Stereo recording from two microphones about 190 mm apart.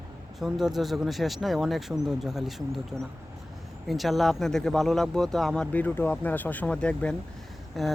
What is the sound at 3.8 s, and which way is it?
Speech, centre (ahead or behind).